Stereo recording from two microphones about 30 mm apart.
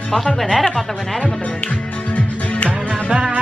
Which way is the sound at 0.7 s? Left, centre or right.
Centre.